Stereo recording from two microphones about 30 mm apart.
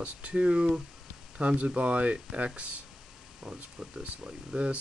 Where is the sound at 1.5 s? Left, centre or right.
Right.